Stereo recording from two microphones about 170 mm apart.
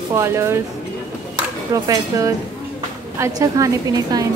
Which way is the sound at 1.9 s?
20° right (ahead or behind).